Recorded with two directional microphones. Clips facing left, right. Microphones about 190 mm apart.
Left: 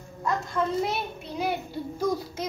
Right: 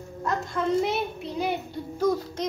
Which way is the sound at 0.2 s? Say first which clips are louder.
Even; centre (ahead or behind).